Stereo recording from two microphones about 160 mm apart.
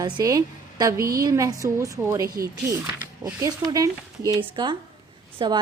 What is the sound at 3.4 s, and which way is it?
A woman's voice, 20° right (ahead or behind).